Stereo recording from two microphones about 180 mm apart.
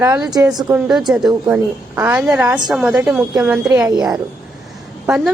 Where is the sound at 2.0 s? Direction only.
15° right (ahead or behind).